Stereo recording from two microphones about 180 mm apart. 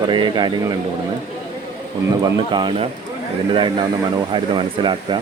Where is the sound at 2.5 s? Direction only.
25° right (ahead or behind).